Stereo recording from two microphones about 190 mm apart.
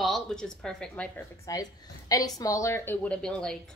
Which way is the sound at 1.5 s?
20° left (ahead or behind).